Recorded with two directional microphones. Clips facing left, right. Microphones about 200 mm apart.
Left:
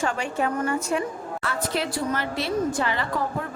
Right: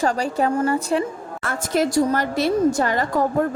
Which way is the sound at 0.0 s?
35° right (ahead or behind).